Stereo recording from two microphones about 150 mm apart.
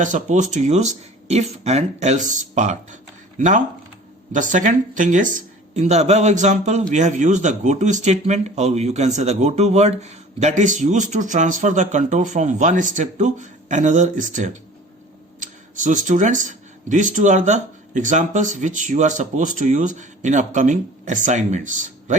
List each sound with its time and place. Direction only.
0.0 s speech: 55° right (ahead or behind)